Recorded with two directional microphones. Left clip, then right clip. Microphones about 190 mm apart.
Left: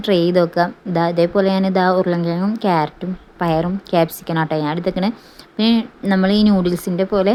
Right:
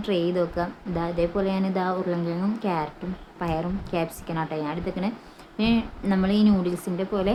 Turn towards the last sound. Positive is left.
turn(degrees=30)  # may be behind; listen again after turning